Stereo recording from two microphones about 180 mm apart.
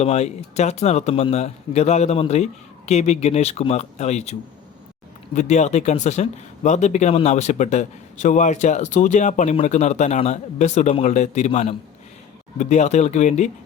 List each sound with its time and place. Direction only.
0.0 s speech: 35° left (ahead or behind)